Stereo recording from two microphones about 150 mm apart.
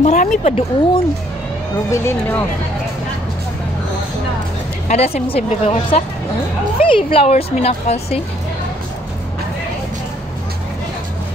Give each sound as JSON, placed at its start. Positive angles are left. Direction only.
{"t": 0.0, "sound": "speech", "side_deg": 55}
{"t": 1.9, "sound": "speech", "side_deg": 15}
{"t": 4.8, "sound": "speech", "side_deg": 45}